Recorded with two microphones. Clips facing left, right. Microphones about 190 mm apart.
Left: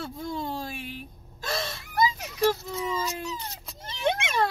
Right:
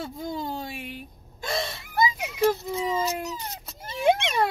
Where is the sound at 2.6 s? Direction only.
20° right (ahead or behind).